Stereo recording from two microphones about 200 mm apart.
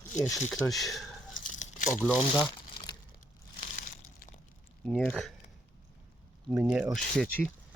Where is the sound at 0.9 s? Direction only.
Centre (ahead or behind).